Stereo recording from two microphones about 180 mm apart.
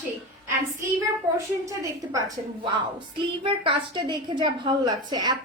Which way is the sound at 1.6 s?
20° right (ahead or behind).